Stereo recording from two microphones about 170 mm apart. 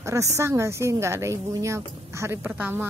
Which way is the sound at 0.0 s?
15° right (ahead or behind).